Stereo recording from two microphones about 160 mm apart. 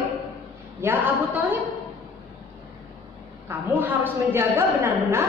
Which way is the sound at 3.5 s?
10° right (ahead or behind).